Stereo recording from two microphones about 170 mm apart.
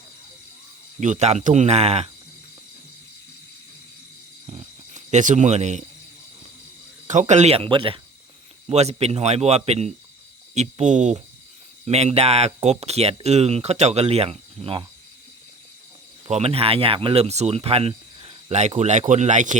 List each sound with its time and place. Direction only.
0.9 s speech: 45° right (ahead or behind)
4.4 s a sound: 40° right (ahead or behind)
7.1 s speech: 45° right (ahead or behind)
16.3 s speech: 35° right (ahead or behind)